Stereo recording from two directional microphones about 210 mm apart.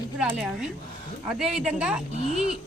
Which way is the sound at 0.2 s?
5° right (ahead or behind).